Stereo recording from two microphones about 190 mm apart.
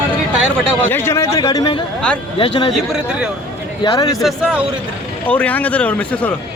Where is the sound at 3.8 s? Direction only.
20° left (ahead or behind).